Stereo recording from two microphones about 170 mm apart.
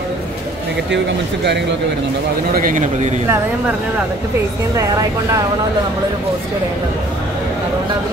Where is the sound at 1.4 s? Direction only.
90° right.